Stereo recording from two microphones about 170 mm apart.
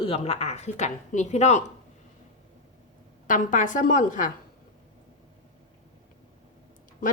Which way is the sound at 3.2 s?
50° left (ahead or behind).